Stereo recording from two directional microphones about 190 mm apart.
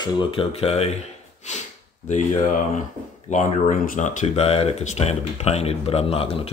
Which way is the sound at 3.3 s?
40° left (ahead or behind).